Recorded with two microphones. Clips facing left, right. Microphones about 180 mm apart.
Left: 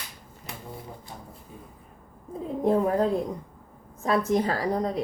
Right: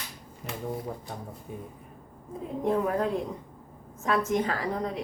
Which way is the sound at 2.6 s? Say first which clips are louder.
Left 4 dB; 35° left (ahead or behind).